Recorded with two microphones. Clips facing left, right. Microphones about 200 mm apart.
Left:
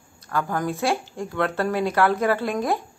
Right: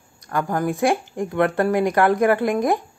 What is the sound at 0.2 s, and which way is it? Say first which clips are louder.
Speech: right 3 dB; 15° right (ahead or behind).